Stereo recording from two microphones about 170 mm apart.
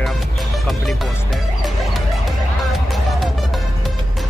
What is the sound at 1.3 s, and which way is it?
Music, centre (ahead or behind).